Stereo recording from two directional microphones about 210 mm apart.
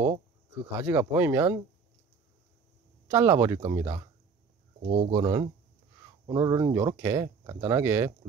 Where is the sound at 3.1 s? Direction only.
15° right (ahead or behind).